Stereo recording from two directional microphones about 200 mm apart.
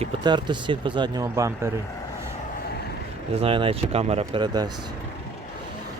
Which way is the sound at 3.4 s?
25° right (ahead or behind).